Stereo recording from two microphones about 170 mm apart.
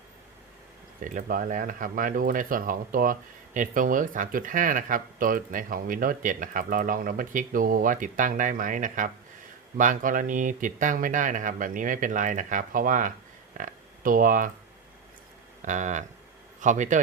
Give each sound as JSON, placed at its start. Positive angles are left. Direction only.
{"t": 1.0, "sound": "speech", "side_deg": -50}
{"t": 15.6, "sound": "a man's voice", "side_deg": -45}